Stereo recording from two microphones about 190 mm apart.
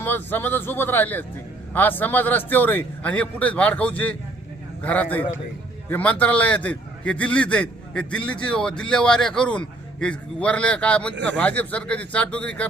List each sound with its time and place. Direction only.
0.0 s a man's voice: 10° left (ahead or behind)
11.1 s speech: 70° right (ahead or behind)
11.3 s a man's voice: 10° left (ahead or behind)